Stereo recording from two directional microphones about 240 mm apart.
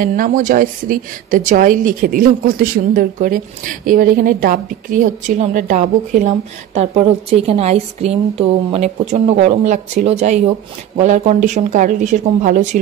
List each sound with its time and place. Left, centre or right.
0.0 s a woman's voice: right